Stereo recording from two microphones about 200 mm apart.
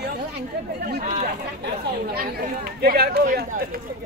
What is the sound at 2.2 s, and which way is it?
Speech, 50° right (ahead or behind).